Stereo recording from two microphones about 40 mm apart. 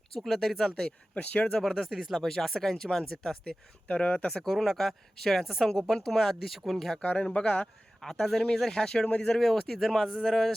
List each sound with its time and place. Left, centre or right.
0.2 s speech: centre
0.9 s speech: left
1.7 s speech: centre
3.8 s speech: left
4.3 s speech: centre
7.0 s speech: left
8.2 s speech: centre
9.0 s speech: left
9.3 s speech: centre